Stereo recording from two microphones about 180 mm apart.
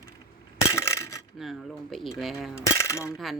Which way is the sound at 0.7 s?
15° left (ahead or behind).